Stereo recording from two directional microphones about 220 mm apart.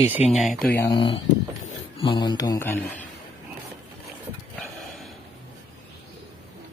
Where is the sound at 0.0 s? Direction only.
5° right (ahead or behind).